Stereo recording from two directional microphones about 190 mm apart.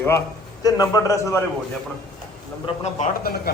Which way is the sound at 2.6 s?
35° left (ahead or behind).